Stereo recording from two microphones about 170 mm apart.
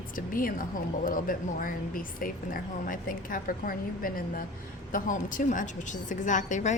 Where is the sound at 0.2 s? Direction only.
55° left (ahead or behind).